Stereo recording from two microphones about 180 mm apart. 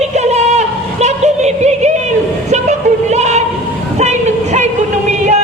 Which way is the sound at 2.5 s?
40° right (ahead or behind).